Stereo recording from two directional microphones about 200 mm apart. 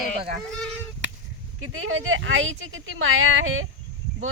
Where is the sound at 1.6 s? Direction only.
90° right.